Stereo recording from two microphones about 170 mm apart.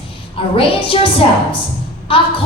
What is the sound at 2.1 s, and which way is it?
Speech, 30° left (ahead or behind).